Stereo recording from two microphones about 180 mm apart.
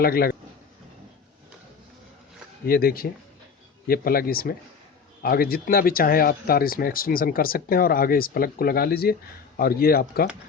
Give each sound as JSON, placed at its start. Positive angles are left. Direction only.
{"t": 0.0, "sound": "speech", "side_deg": 55}
{"t": 2.6, "sound": "speech", "side_deg": 55}